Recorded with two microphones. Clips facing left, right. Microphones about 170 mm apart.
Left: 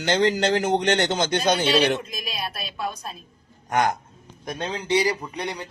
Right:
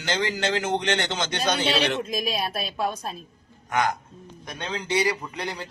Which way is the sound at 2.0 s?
45° right (ahead or behind).